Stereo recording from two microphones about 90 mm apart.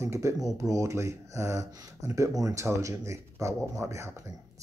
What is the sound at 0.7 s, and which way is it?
Speech, 35° right (ahead or behind).